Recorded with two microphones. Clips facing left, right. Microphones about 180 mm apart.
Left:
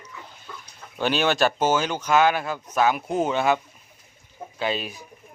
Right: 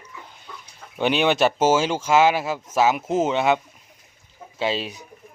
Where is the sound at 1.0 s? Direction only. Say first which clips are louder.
Right 2 dB; 20° right (ahead or behind).